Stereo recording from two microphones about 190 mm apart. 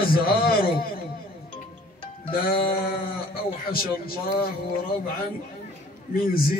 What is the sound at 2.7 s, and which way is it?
Speech, 50° left (ahead or behind).